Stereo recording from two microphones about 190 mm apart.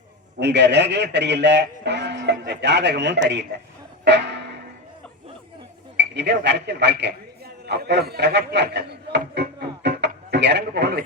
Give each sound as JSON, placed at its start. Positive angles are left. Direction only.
{"t": 0.3, "sound": "a man's voice", "side_deg": -65}
{"t": 4.0, "sound": "music", "side_deg": -65}
{"t": 6.0, "sound": "a man's voice", "side_deg": -65}